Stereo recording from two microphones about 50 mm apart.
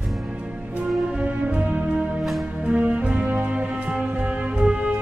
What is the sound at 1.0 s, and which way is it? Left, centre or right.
Music, right.